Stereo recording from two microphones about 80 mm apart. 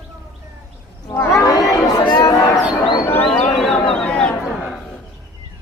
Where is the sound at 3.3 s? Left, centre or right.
Centre.